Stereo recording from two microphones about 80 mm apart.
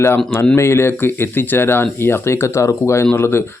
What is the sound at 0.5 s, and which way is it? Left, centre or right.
Speech, left.